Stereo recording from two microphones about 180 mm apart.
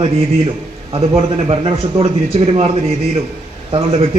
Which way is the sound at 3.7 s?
30° right (ahead or behind).